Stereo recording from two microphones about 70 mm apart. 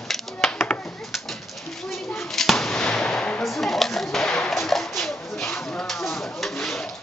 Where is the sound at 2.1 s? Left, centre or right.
Centre.